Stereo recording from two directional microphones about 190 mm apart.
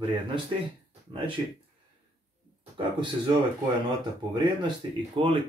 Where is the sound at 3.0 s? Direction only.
25° right (ahead or behind).